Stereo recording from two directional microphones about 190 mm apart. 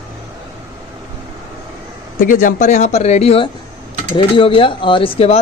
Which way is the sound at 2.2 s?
45° left (ahead or behind).